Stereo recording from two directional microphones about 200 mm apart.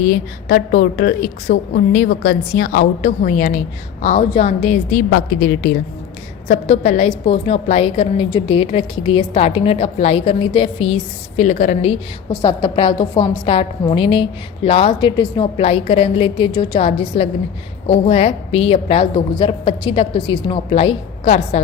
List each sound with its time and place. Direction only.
0.0 s a woman's voice: 45° left (ahead or behind)
6.5 s a woman's voice: 35° left (ahead or behind)
12.3 s a woman's voice: 20° left (ahead or behind)